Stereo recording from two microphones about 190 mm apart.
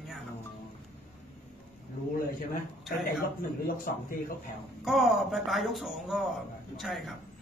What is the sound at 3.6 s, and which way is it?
Speech, 45° left (ahead or behind).